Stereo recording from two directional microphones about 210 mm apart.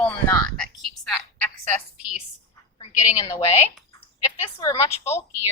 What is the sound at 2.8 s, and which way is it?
Speech, 20° left (ahead or behind).